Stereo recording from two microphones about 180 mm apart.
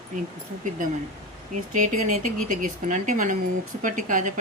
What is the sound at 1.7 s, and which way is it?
Speech, 45° right (ahead or behind).